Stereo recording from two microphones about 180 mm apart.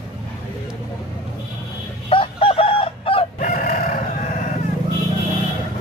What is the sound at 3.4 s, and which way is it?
Crowing, 50° left (ahead or behind).